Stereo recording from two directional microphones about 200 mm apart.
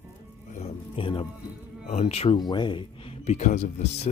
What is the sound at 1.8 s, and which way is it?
Speech, 30° left (ahead or behind).